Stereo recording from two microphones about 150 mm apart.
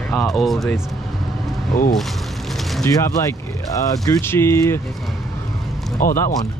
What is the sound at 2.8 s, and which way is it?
Speech, 20° left (ahead or behind).